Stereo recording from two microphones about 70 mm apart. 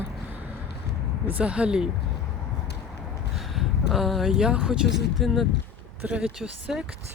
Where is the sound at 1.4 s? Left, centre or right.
Centre.